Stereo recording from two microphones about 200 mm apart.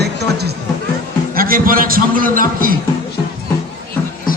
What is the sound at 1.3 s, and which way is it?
A man's voice, 45° right (ahead or behind).